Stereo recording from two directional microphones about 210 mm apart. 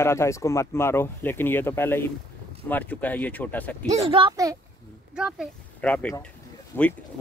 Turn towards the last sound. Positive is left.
turn(degrees=10)  # may be behind; listen again after turning